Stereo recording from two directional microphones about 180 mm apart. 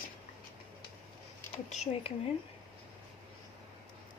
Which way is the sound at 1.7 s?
40° left (ahead or behind).